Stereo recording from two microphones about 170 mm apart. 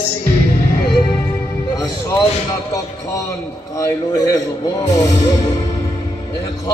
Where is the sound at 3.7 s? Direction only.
20° left (ahead or behind).